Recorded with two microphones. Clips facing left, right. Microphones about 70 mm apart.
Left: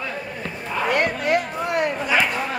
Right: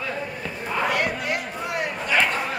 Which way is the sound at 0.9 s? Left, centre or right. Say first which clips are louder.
Left 5 dB; left.